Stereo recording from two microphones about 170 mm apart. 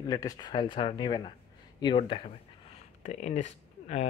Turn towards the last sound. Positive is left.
turn(degrees=40)  # may be behind; listen again after turning